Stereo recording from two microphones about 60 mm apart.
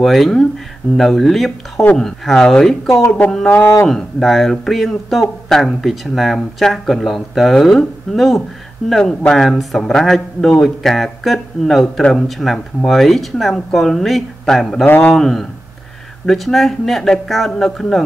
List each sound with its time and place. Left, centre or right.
0.0 s speech: centre
14.9 s a man's voice: left
15.1 s speech: centre